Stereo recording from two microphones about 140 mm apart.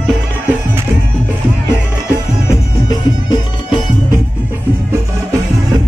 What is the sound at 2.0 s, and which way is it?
Music, 25° left (ahead or behind).